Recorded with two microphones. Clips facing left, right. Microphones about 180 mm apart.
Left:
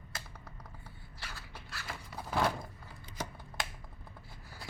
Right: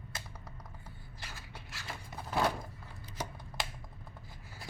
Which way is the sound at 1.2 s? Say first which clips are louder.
Left 1 dB; 15° right (ahead or behind).